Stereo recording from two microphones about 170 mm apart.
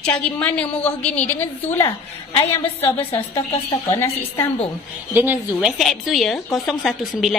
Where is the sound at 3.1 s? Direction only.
35° left (ahead or behind).